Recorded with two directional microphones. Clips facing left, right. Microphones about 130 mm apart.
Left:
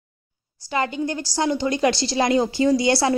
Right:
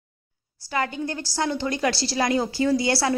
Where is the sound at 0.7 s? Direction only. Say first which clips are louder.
Left 3 dB; 20° left (ahead or behind).